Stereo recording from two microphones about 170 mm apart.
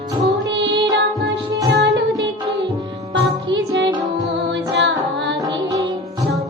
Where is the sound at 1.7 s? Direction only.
90° right.